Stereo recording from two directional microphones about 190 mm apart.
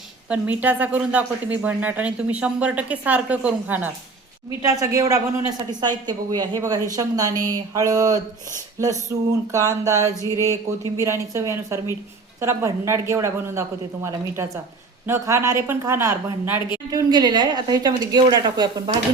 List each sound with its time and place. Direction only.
0.3 s a woman's voice: 10° right (ahead or behind)
9.5 s speech: 15° right (ahead or behind)
10.2 s speech: 15° left (ahead or behind)
10.9 s a woman's voice: 15° right (ahead or behind)